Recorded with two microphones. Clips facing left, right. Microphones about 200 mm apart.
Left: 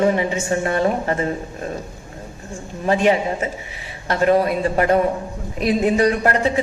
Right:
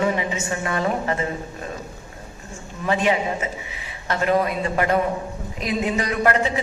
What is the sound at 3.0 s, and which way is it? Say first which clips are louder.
Speech: left 4 dB; 50° left (ahead or behind).